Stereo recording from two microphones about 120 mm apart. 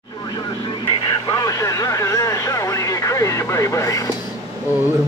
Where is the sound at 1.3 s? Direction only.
30° left (ahead or behind).